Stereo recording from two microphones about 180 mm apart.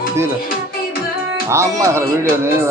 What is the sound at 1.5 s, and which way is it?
Speech, 15° right (ahead or behind).